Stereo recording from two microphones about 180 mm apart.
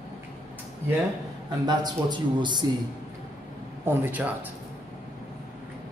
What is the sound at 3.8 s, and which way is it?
Speech, 10° right (ahead or behind).